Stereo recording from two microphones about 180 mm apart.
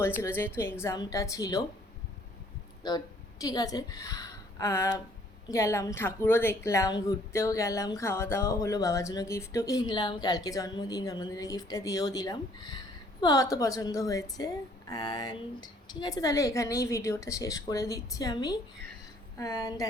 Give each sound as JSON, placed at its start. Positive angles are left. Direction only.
{"t": 0.0, "sound": "a woman's voice", "side_deg": 15}
{"t": 3.4, "sound": "a woman's voice", "side_deg": 20}